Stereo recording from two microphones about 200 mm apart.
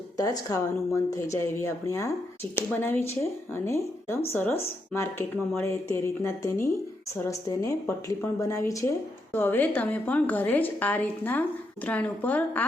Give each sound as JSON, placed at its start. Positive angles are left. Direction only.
{"t": 0.2, "sound": "speech", "side_deg": 20}
{"t": 3.5, "sound": "speech", "side_deg": 15}